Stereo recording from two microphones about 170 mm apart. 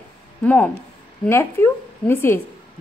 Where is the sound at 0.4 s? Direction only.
10° left (ahead or behind).